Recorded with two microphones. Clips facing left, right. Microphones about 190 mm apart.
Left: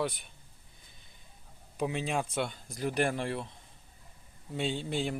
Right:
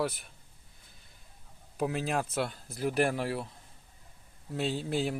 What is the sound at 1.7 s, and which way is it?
Speech, centre (ahead or behind).